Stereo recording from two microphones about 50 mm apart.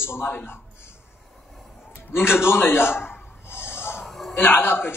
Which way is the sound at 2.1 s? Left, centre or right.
Left.